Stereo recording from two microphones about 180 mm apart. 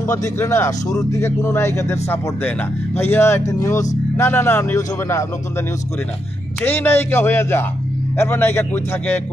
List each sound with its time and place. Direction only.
0.0 s speech: 15° left (ahead or behind)
6.6 s speech: 10° left (ahead or behind)